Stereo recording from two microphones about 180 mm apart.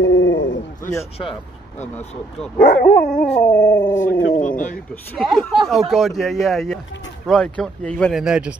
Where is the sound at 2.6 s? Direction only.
55° left (ahead or behind).